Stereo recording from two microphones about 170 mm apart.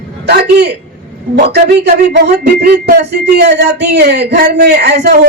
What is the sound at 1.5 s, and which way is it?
Speech, 75° right (ahead or behind).